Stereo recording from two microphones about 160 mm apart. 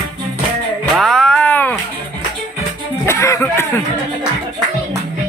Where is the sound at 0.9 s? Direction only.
Centre (ahead or behind).